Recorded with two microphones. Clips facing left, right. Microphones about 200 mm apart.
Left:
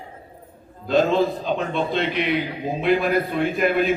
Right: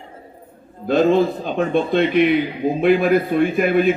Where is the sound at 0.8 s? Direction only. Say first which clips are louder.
Right 3 dB; 50° right (ahead or behind).